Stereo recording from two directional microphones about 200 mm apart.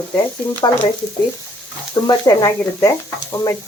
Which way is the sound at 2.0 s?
15° left (ahead or behind).